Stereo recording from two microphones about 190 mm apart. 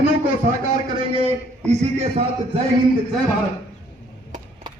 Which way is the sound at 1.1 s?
30° right (ahead or behind).